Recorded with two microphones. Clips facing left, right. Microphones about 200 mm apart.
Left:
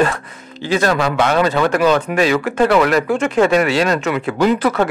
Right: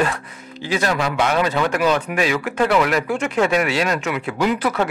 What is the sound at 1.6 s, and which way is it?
Speech, 50° left (ahead or behind).